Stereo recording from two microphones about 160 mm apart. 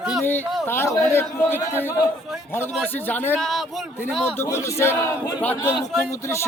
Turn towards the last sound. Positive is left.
turn(degrees=15)  # may be behind; listen again after turning